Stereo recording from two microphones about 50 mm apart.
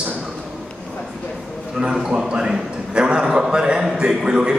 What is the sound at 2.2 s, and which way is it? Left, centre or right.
A man's voice, centre.